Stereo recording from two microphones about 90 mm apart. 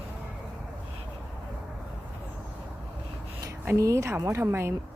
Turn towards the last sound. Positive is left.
turn(degrees=-25)  # may be behind; listen again after turning